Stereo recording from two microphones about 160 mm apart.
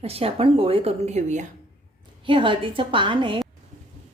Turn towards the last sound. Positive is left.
turn(degrees=-30)  # may be behind; listen again after turning